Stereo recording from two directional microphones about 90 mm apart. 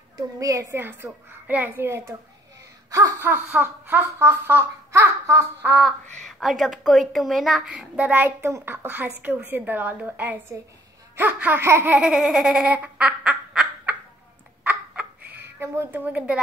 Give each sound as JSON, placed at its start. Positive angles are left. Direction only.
{"t": 0.4, "sound": "speech", "side_deg": -35}
{"t": 0.7, "sound": "a woman's voice", "side_deg": -25}
{"t": 2.9, "sound": "wail", "side_deg": -40}
{"t": 3.2, "sound": "a woman's voice", "side_deg": -20}
{"t": 5.8, "sound": "a woman's voice", "side_deg": 0}
{"t": 12.0, "sound": "a woman's voice", "side_deg": -5}
{"t": 14.6, "sound": "a sound", "side_deg": -15}